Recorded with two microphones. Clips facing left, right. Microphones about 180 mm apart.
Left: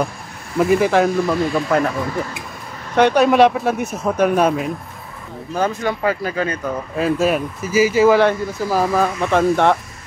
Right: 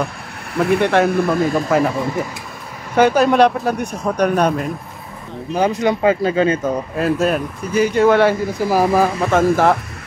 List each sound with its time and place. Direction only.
0.6 s speech: centre (ahead or behind)
1.1 s speech: 55° right (ahead or behind)
1.5 s speech: 5° right (ahead or behind)
5.5 s speech: 15° right (ahead or behind)
7.0 s speech: centre (ahead or behind)
8.6 s speech: 10° right (ahead or behind)